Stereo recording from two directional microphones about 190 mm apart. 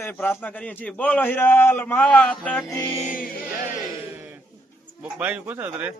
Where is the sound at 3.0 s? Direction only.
45° left (ahead or behind).